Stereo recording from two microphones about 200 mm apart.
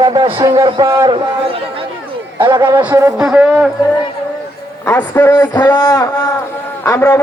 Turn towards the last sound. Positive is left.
turn(degrees=15)  # may be behind; listen again after turning